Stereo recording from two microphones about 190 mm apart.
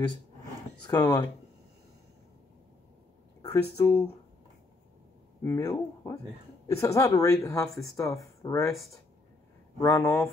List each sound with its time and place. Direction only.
0.8 s speech: 20° left (ahead or behind)
3.7 s speech: 15° left (ahead or behind)
5.4 s speech: 15° left (ahead or behind)
9.8 s speech: 15° left (ahead or behind)